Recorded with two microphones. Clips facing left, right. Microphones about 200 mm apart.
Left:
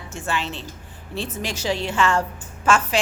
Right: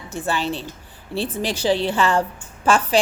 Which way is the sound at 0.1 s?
35° right (ahead or behind).